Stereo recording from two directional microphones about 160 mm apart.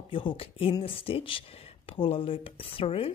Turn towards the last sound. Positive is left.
turn(degrees=35)  # may be behind; listen again after turning